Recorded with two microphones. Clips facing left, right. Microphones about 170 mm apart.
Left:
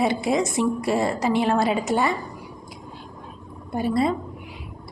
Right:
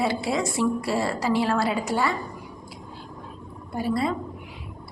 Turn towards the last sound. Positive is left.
turn(degrees=20)  # may be behind; listen again after turning